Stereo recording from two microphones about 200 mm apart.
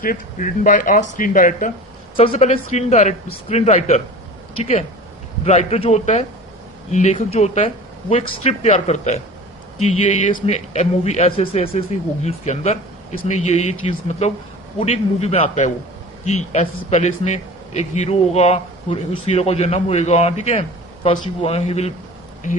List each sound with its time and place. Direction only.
0.0 s a man's voice: 45° left (ahead or behind)
2.1 s a man's voice: 30° left (ahead or behind)